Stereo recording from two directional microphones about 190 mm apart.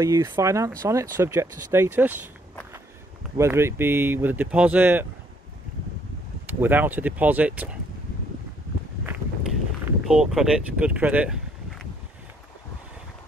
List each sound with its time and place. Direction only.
0.0 s speech: 15° right (ahead or behind)
3.3 s speech: 15° right (ahead or behind)
6.4 s speech: 10° right (ahead or behind)
9.8 s speech: 5° right (ahead or behind)